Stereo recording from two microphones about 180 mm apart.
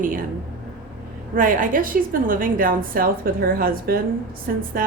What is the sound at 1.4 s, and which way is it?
A woman's voice, 50° right (ahead or behind).